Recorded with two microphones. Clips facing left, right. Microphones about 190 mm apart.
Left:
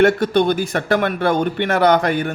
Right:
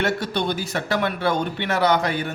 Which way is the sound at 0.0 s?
55° left (ahead or behind).